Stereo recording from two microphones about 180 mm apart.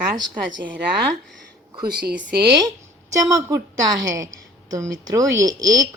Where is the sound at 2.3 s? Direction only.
60° right (ahead or behind).